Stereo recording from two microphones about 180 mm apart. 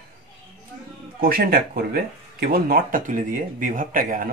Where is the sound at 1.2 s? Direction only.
55° right (ahead or behind).